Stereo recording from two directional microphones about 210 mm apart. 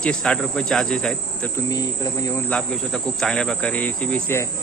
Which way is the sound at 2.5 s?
5° left (ahead or behind).